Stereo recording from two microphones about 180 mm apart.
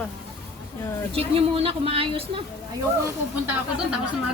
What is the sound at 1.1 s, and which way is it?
Speech, 30° right (ahead or behind).